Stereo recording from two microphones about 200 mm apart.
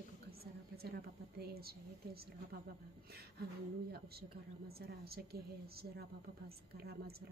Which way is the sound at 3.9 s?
50° right (ahead or behind).